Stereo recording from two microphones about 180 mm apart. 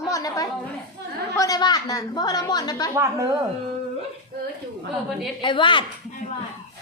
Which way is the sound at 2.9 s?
15° right (ahead or behind).